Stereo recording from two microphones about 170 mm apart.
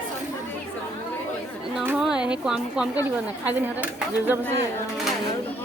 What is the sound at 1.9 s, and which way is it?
Speech, 5° right (ahead or behind).